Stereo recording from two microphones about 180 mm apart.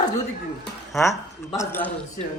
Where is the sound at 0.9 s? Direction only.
15° left (ahead or behind).